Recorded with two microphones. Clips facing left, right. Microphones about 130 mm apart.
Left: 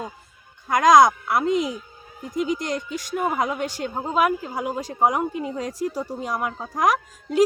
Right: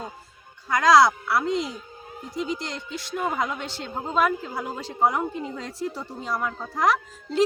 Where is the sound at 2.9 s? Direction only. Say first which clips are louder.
Even; 10° left (ahead or behind).